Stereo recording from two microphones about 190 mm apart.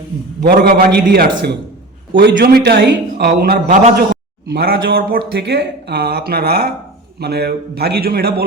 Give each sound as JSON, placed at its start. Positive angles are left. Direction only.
{"t": 0.4, "sound": "speech", "side_deg": -55}
{"t": 2.3, "sound": "speech", "side_deg": -55}